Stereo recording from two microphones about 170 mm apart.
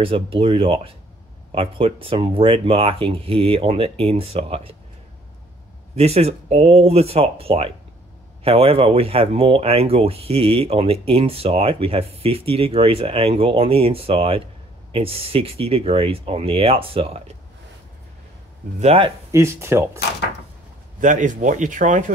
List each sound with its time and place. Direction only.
0.0 s speech: 35° right (ahead or behind)
5.9 s speech: 35° right (ahead or behind)
18.8 s speech: 35° right (ahead or behind)
19.3 s speech: 15° right (ahead or behind)
21.0 s speech: 50° right (ahead or behind)